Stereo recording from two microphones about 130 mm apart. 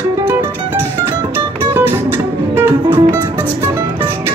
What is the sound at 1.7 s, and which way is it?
Music, 20° right (ahead or behind).